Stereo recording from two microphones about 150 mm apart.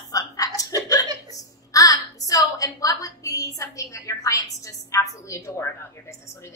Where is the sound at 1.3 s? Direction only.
25° left (ahead or behind).